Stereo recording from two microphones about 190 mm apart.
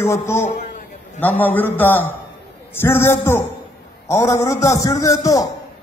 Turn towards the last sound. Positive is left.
turn(degrees=20)  # may be behind; listen again after turning